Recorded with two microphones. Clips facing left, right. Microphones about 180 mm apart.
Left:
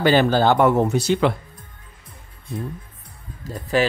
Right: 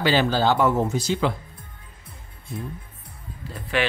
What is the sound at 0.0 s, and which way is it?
Speech, 55° left (ahead or behind).